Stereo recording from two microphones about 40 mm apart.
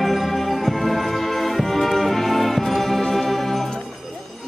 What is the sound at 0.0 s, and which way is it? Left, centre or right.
Music, centre.